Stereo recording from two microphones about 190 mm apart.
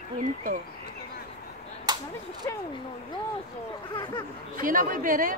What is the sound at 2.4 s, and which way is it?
Speech, 15° left (ahead or behind).